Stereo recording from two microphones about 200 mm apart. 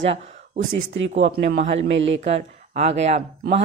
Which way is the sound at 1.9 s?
70° right (ahead or behind).